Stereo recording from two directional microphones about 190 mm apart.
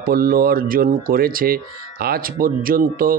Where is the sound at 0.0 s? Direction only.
50° right (ahead or behind).